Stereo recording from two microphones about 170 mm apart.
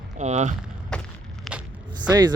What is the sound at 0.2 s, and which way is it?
Speech, 45° right (ahead or behind).